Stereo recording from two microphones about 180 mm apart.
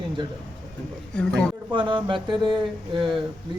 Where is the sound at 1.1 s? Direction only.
5° left (ahead or behind).